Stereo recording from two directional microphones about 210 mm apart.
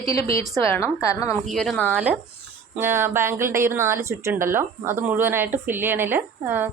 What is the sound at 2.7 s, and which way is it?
Speech, 10° right (ahead or behind).